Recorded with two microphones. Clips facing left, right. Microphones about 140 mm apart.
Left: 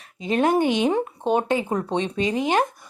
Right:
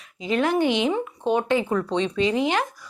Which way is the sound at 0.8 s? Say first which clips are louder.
Left 2 dB; 45° left (ahead or behind).